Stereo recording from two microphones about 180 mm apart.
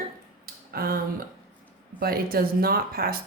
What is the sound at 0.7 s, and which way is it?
Speech, 55° right (ahead or behind).